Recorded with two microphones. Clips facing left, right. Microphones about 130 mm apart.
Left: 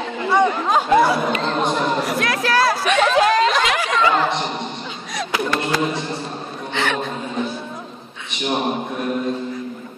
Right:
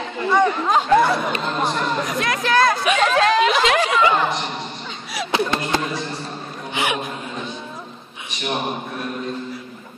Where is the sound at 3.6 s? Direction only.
30° right (ahead or behind).